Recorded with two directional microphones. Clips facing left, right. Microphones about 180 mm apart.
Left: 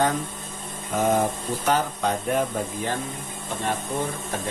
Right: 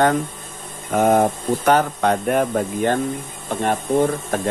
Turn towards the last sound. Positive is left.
turn(degrees=-60)  # may be behind; listen again after turning